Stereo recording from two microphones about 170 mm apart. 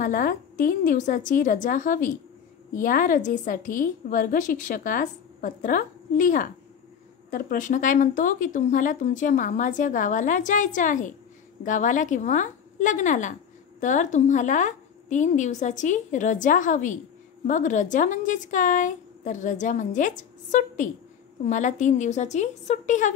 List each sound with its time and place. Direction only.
0.0 s a woman's voice: 55° left (ahead or behind)